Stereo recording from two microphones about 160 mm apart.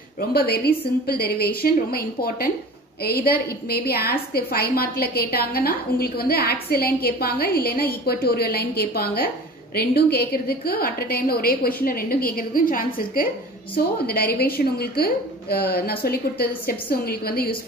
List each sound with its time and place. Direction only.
0.3 s a woman's voice: 75° left (ahead or behind)
14.0 s a woman's voice: 75° left (ahead or behind)